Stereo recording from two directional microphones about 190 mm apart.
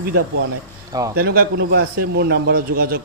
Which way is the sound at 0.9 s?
20° right (ahead or behind).